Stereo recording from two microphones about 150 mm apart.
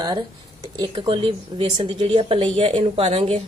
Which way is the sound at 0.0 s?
25° right (ahead or behind).